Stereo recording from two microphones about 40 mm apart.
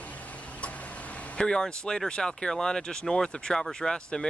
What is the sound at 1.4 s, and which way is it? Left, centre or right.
Speech, left.